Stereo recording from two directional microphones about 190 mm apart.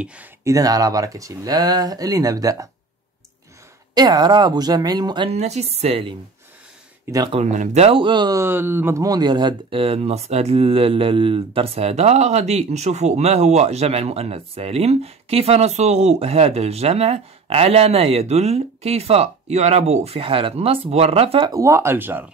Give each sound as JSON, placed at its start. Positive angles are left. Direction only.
{"t": 0.0, "sound": "speech", "side_deg": -10}
{"t": 3.9, "sound": "speech", "side_deg": -20}
{"t": 7.1, "sound": "speech", "side_deg": -20}
{"t": 7.3, "sound": "speech", "side_deg": -40}